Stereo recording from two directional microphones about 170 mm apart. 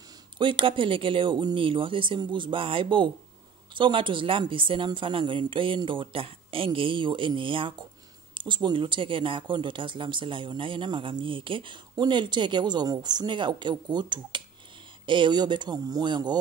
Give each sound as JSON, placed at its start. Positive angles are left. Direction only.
{"t": 0.4, "sound": "speech", "side_deg": -30}